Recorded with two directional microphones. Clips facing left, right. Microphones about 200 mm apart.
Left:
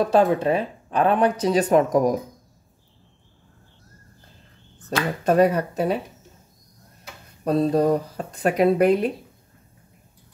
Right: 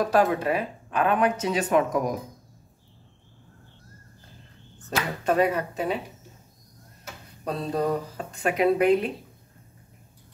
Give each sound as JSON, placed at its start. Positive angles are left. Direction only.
{"t": 0.0, "sound": "speech", "side_deg": 25}
{"t": 5.2, "sound": "speech", "side_deg": 40}
{"t": 7.4, "sound": "speech", "side_deg": 40}